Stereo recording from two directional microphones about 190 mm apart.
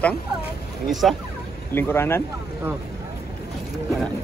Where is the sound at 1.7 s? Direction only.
10° left (ahead or behind).